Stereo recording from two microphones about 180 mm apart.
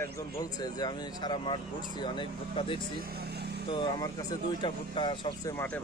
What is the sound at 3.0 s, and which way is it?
Speech, 60° right (ahead or behind).